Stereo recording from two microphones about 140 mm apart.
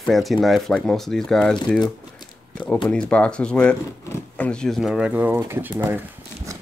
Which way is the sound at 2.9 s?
5° left (ahead or behind).